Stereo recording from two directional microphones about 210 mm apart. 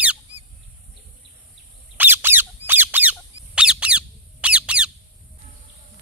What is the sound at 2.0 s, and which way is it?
Squeak, 10° right (ahead or behind).